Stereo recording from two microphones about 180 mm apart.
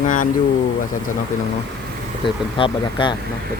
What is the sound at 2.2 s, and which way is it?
Speech, 30° left (ahead or behind).